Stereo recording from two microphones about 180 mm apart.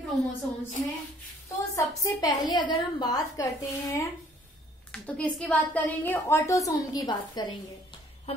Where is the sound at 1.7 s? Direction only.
20° left (ahead or behind).